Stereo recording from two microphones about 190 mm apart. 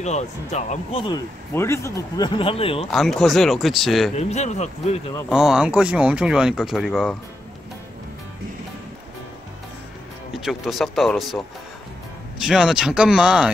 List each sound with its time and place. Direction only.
0.0 s speech: 35° left (ahead or behind)
1.5 s a man's voice: 15° left (ahead or behind); by 2.9 s 30° left (ahead or behind)
2.9 s speech: centre (ahead or behind)
4.1 s speech: 35° left (ahead or behind)
5.3 s speech: 5° right (ahead or behind)
10.3 s speech: centre (ahead or behind)